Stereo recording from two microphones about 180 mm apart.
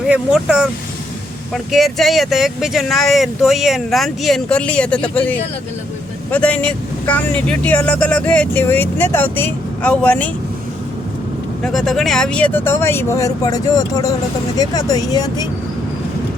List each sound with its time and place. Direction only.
0.0 s speech: 5° right (ahead or behind)
11.6 s speech: centre (ahead or behind); by 15.4 s 20° left (ahead or behind)